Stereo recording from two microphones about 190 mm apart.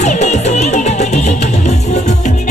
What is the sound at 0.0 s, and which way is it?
Music, 40° left (ahead or behind).